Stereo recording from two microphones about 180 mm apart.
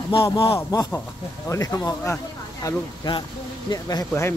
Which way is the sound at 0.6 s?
15° left (ahead or behind).